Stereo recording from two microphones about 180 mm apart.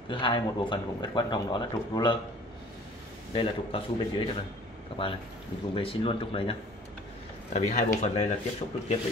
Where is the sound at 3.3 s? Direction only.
30° left (ahead or behind).